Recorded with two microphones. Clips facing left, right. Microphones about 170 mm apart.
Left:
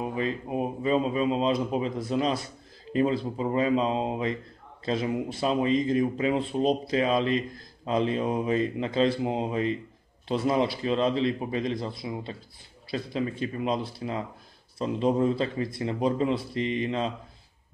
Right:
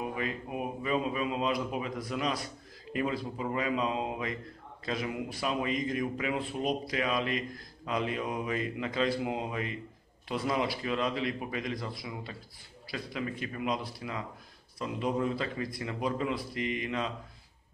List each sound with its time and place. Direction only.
0.0 s speech: 30° left (ahead or behind)